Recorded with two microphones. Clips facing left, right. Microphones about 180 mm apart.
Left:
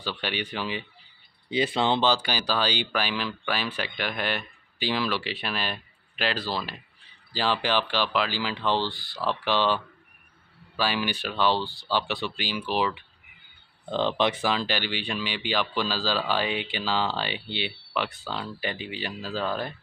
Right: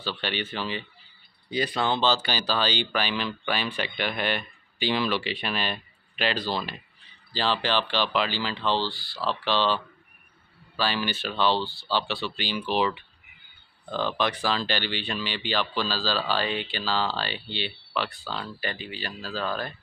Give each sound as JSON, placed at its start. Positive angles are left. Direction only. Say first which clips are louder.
{"t": 0.0, "sound": "speech", "louder": "even", "side_deg": 10}
{"t": 1.5, "sound": "speech", "louder": "left 2 dB", "side_deg": 25}
{"t": 10.8, "sound": "speech", "louder": "even", "side_deg": 10}
{"t": 13.8, "sound": "speech", "louder": "left 3 dB", "side_deg": 25}